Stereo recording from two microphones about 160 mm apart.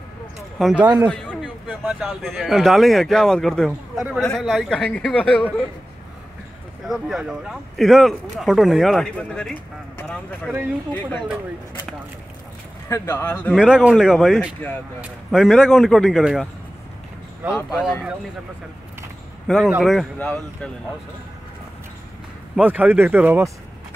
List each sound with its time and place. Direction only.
0.6 s speech: centre (ahead or behind)
0.8 s speech: 25° right (ahead or behind)
1.1 s speech: centre (ahead or behind)
6.9 s speech: 5° right (ahead or behind)
12.8 s speech: 15° left (ahead or behind)
13.6 s speech: 5° right (ahead or behind)
17.6 s speech: 10° left (ahead or behind)
19.4 s speech: centre (ahead or behind)
20.2 s speech: 10° left (ahead or behind)
22.6 s speech: 10° right (ahead or behind)